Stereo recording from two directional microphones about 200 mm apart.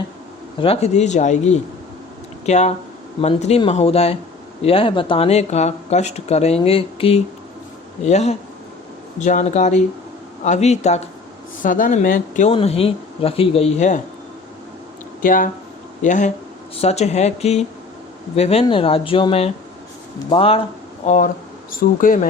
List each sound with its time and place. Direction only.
0.6 s speech: 30° left (ahead or behind)
2.5 s speech: 35° left (ahead or behind)
12.5 s speech: 30° left (ahead or behind)
15.2 s speech: 40° left (ahead or behind)